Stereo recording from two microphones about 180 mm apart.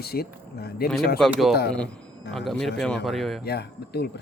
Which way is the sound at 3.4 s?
65° left (ahead or behind).